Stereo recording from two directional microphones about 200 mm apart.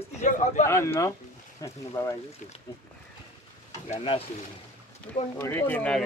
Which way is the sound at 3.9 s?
30° left (ahead or behind).